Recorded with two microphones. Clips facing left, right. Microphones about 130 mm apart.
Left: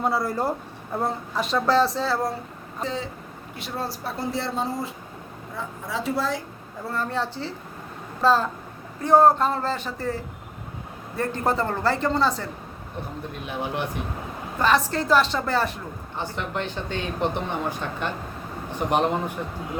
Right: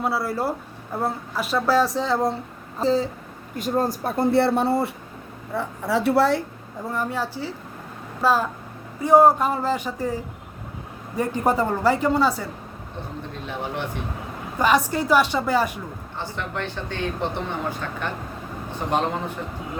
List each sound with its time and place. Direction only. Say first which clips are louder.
0.0 s speech: even; 5° right (ahead or behind)
2.7 s a sound: right 9 dB; 35° right (ahead or behind)
3.5 s a woman's voice: right 8 dB; 45° right (ahead or behind); by 6.4 s 70° right (ahead or behind)
6.8 s speech: right 1 dB; 15° right (ahead or behind)
13.4 s speech: left 1 dB; 15° left (ahead or behind)
14.6 s speech: right 2 dB; 15° right (ahead or behind)
16.1 s a man's voice: left 1 dB; 15° left (ahead or behind)